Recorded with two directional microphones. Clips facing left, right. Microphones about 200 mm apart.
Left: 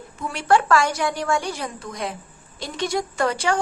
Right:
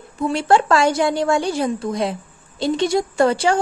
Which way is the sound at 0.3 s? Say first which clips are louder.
Right 2 dB; 25° right (ahead or behind).